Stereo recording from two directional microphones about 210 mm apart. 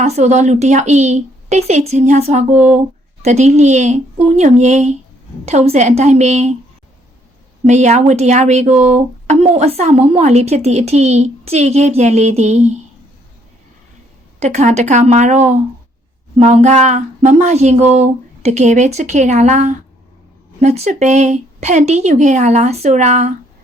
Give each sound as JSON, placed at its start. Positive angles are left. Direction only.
{"t": 0.0, "sound": "speech", "side_deg": -35}
{"t": 7.6, "sound": "speech", "side_deg": -35}
{"t": 14.3, "sound": "speech", "side_deg": -35}